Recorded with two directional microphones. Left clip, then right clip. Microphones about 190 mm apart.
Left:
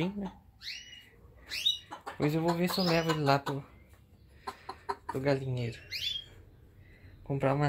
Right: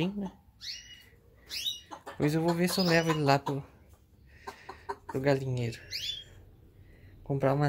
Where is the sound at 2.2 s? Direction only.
15° right (ahead or behind).